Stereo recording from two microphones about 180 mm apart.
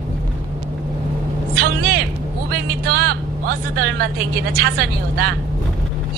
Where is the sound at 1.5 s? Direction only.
55° right (ahead or behind).